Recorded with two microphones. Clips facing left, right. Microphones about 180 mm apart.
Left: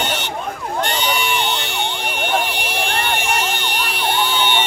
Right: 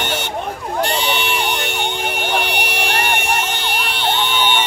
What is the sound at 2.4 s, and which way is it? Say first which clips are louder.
Vehicle: right 2 dB; 70° right (ahead or behind).